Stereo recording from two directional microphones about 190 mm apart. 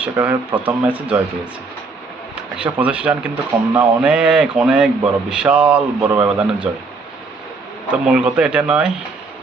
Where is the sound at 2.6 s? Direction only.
5° right (ahead or behind).